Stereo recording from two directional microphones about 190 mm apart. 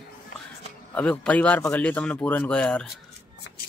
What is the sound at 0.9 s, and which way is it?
Speech, 5° left (ahead or behind).